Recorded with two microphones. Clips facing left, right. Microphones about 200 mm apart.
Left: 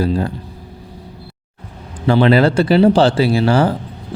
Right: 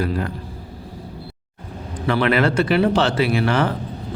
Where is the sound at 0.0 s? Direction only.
30° left (ahead or behind).